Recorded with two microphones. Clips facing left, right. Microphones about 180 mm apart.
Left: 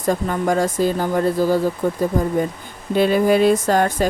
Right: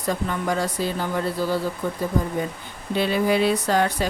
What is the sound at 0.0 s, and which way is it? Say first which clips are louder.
Speech: left 5 dB; 45° left (ahead or behind).